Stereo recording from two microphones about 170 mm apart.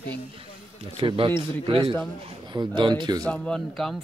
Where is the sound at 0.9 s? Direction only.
30° right (ahead or behind).